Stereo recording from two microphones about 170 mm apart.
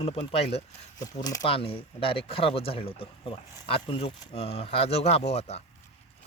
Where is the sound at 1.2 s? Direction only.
20° left (ahead or behind).